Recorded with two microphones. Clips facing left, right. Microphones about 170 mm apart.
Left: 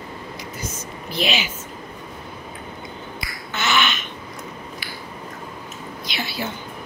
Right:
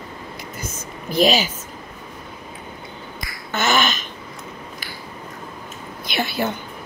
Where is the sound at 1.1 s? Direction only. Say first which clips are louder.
Right 7 dB; 40° right (ahead or behind).